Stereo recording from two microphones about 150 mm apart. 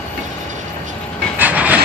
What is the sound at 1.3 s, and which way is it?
Train, 10° right (ahead or behind).